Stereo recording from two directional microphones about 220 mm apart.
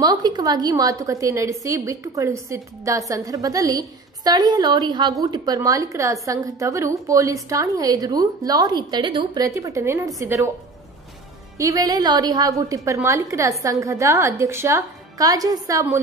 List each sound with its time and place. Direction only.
0.0 s a woman's voice: 20° right (ahead or behind)
11.5 s a woman's voice: 15° right (ahead or behind)